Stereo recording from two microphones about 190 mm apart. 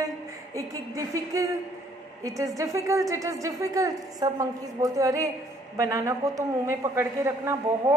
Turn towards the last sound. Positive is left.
turn(degrees=-15)  # may be behind; listen again after turning